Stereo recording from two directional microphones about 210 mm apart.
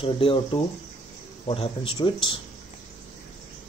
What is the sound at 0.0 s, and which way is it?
Speech, 25° left (ahead or behind).